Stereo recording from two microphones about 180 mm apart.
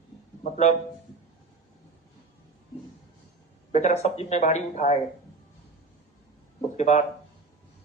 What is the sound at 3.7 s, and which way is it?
Speech, 40° left (ahead or behind).